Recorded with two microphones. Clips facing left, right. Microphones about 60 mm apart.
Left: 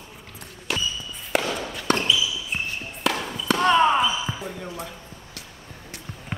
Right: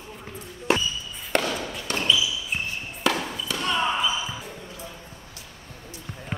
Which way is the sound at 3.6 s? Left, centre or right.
Left.